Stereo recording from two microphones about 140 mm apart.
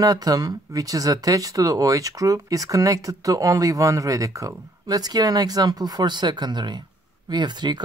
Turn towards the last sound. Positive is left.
turn(degrees=-30)  # may be behind; listen again after turning